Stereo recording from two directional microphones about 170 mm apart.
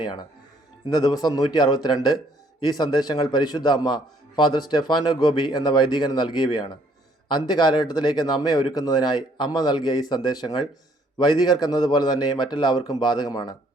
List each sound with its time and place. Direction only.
0.0 s speech: 25° left (ahead or behind)